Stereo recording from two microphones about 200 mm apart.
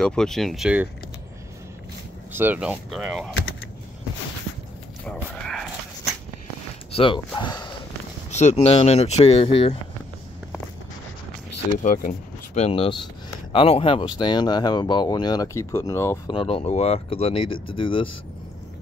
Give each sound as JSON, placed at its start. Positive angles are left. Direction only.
{"t": 0.0, "sound": "speech", "side_deg": 5}
{"t": 2.3, "sound": "speech", "side_deg": -10}
{"t": 5.0, "sound": "dog", "side_deg": 0}
{"t": 6.9, "sound": "a sound", "side_deg": 25}
{"t": 7.3, "sound": "speech", "side_deg": 20}
{"t": 8.3, "sound": "speech", "side_deg": 35}
{"t": 11.8, "sound": "speech", "side_deg": 40}
{"t": 16.3, "sound": "speech", "side_deg": 30}